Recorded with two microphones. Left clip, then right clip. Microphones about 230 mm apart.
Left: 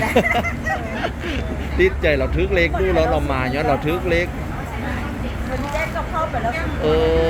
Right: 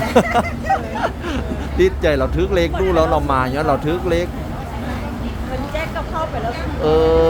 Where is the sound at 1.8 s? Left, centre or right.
Right.